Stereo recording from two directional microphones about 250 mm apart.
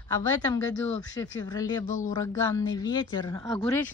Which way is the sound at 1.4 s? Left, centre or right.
Centre.